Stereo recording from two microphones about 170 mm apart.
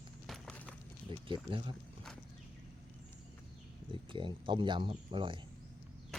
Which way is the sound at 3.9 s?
30° right (ahead or behind).